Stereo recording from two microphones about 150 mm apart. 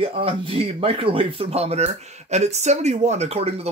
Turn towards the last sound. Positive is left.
turn(degrees=-45)  # may be behind; listen again after turning